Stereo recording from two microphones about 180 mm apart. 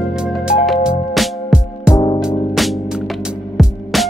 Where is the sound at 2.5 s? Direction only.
Centre (ahead or behind).